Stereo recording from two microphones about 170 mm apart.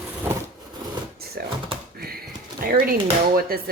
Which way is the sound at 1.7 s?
30° right (ahead or behind).